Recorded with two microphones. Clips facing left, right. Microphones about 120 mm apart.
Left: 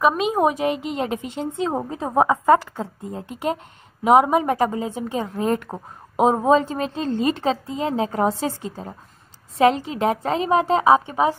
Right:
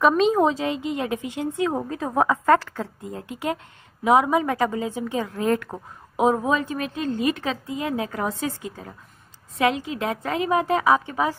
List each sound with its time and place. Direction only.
0.0 s a woman's voice: 10° left (ahead or behind)